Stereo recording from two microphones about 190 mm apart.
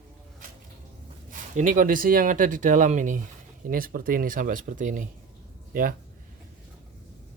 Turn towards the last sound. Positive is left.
turn(degrees=-45)  # may be behind; listen again after turning